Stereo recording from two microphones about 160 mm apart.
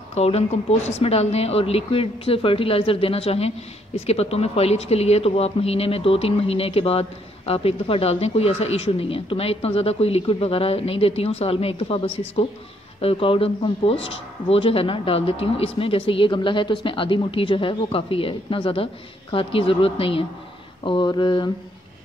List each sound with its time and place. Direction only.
0.1 s speech: 40° left (ahead or behind)
20.8 s mantra: 30° left (ahead or behind)